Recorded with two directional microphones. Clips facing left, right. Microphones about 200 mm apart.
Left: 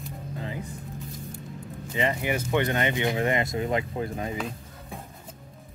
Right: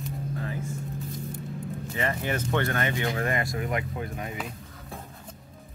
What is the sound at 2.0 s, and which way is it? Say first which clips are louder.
Speech: left 3 dB; 15° left (ahead or behind).